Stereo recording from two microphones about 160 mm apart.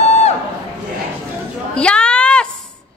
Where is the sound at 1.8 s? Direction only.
5° left (ahead or behind).